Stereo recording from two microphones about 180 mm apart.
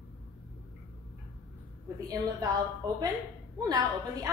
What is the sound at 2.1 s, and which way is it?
A woman's voice, 20° right (ahead or behind).